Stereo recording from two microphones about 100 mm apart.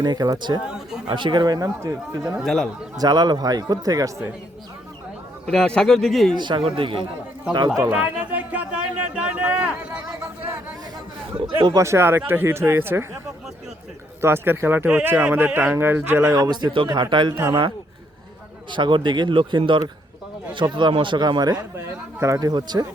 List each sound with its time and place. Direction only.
0.0 s a man's voice: 45° right (ahead or behind)
0.6 s a sound: 5° right (ahead or behind)
1.0 s a man's voice: 50° right (ahead or behind); by 2.2 s 30° right (ahead or behind)
2.2 s speech: 5° right (ahead or behind)
3.0 s a man's voice: 45° right (ahead or behind)
5.5 s speech: 5° left (ahead or behind)
6.3 s a man's voice: 50° right (ahead or behind)
6.6 s a man's voice: 65° right (ahead or behind)
7.9 s a sound: 15° right (ahead or behind)
11.8 s speech: 25° right (ahead or behind)
14.2 s speech: 25° right (ahead or behind)
16.3 s a man's voice: 45° right (ahead or behind)